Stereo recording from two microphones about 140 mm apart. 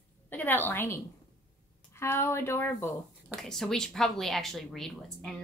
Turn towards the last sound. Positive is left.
turn(degrees=5)  # may be behind; listen again after turning